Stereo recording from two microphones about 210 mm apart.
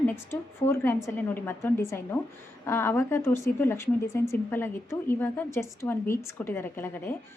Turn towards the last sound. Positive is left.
turn(degrees=10)  # may be behind; listen again after turning